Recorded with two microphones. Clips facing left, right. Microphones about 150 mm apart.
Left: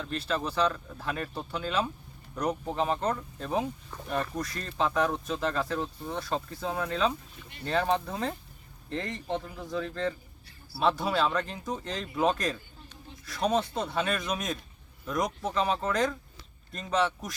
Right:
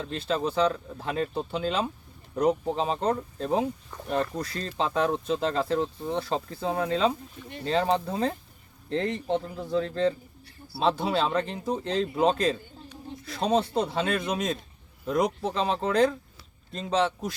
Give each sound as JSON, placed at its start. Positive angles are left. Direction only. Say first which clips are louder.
{"t": 0.0, "sound": "speech", "louder": "right 3 dB", "side_deg": -20}